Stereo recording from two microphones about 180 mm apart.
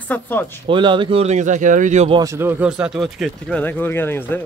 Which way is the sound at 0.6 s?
25° right (ahead or behind).